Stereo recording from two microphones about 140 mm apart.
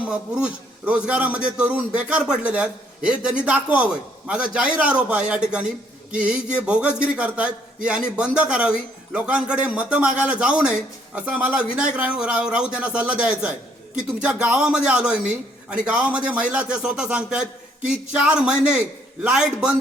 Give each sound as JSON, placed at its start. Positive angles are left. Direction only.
{"t": 0.1, "sound": "a man's voice", "side_deg": -10}